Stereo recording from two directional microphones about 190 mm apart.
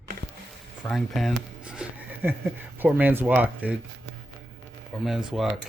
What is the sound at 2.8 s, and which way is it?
Speech, 10° right (ahead or behind).